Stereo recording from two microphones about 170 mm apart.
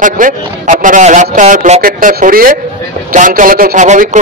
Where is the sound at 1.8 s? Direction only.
55° right (ahead or behind).